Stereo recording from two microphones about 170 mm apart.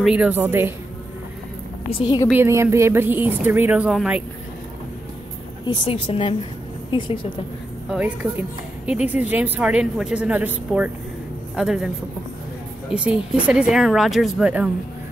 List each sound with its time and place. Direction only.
0.0 s speech: 5° right (ahead or behind)
1.9 s a woman's voice: 30° left (ahead or behind)
2.3 s speech: 15° right (ahead or behind)
5.7 s a woman's voice: 30° left (ahead or behind)
7.9 s speech: 10° right (ahead or behind)
12.9 s speech: 5° right (ahead or behind)